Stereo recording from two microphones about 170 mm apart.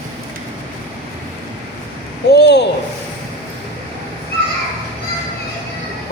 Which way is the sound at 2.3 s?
85° left.